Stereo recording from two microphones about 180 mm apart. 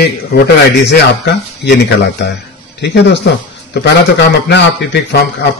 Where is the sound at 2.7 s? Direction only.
70° left (ahead or behind).